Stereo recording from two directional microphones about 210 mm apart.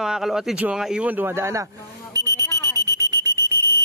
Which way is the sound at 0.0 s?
Centre (ahead or behind).